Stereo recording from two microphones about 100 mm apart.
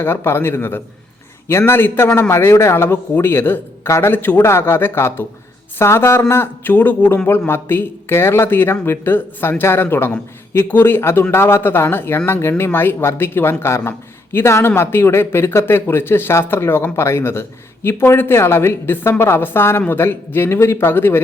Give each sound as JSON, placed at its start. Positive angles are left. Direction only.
{"t": 0.0, "sound": "speech", "side_deg": 20}